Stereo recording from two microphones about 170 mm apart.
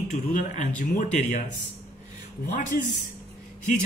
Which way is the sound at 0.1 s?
50° left (ahead or behind).